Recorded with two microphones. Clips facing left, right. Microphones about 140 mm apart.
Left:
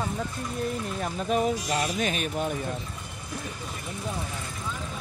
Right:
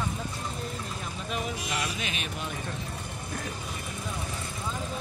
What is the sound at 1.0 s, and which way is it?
Speech, 40° left (ahead or behind).